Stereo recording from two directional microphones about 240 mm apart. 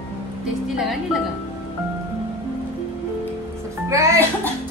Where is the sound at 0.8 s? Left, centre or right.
Centre.